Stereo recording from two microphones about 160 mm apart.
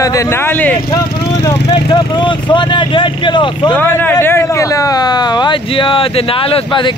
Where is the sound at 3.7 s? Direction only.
10° left (ahead or behind).